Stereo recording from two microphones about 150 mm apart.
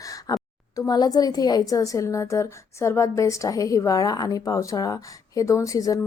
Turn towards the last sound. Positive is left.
turn(degrees=20)  # may be behind; listen again after turning